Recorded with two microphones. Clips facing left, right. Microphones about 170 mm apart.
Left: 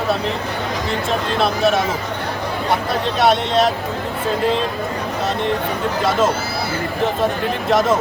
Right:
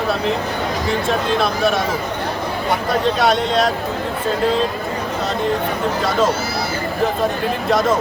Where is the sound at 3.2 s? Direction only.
5° left (ahead or behind).